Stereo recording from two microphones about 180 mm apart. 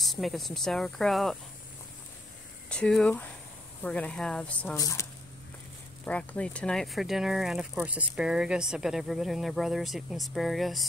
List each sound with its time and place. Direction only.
0.0 s speech: centre (ahead or behind)
2.7 s speech: 5° left (ahead or behind)
4.7 s speech: 20° left (ahead or behind)
6.0 s speech: 5° left (ahead or behind)